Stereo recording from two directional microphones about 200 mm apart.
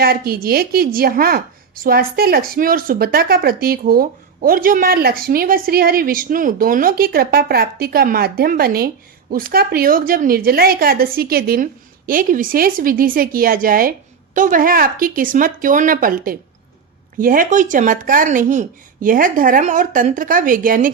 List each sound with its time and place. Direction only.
0.0 s a woman's voice: 50° right (ahead or behind)